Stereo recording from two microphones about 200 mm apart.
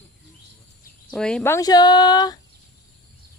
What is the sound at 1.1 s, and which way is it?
Speech, 5° left (ahead or behind).